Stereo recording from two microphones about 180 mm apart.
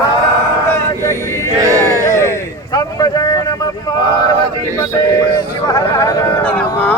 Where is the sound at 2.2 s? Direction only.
15° left (ahead or behind).